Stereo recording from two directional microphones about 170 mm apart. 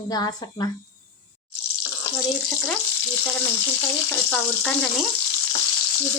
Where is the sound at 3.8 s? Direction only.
10° left (ahead or behind).